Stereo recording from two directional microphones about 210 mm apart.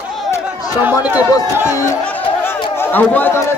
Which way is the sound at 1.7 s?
10° left (ahead or behind).